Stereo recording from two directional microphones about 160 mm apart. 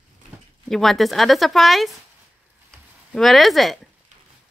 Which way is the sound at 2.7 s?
Centre (ahead or behind).